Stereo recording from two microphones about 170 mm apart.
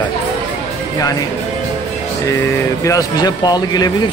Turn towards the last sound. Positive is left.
turn(degrees=25)  # may be behind; listen again after turning